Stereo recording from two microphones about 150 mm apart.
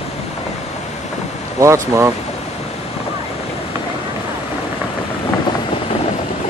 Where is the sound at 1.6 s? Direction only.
20° right (ahead or behind).